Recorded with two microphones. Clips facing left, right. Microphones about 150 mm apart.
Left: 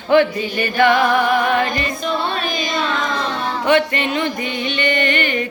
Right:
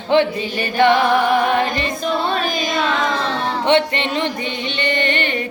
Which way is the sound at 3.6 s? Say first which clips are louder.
Left 1 dB; 30° right (ahead or behind).